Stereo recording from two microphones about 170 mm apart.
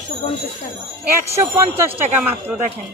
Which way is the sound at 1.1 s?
15° right (ahead or behind).